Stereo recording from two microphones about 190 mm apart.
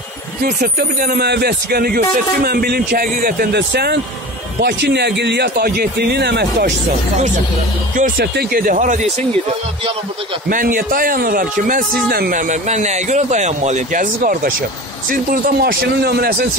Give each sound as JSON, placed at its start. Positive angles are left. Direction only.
{"t": 0.4, "sound": "speech", "side_deg": -50}
{"t": 7.9, "sound": "speech", "side_deg": -45}
{"t": 10.5, "sound": "speech", "side_deg": -45}